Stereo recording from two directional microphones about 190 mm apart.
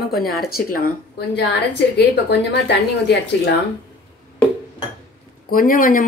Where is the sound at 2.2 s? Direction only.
65° left (ahead or behind).